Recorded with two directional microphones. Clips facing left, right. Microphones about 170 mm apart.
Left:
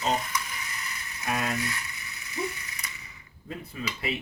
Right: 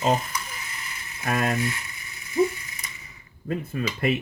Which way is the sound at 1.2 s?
55° right (ahead or behind).